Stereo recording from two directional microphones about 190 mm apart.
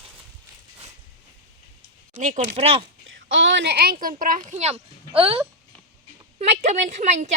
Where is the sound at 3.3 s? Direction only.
75° right (ahead or behind); by 3.9 s 60° right (ahead or behind).